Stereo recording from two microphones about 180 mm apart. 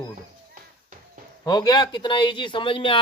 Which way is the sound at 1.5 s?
20° left (ahead or behind).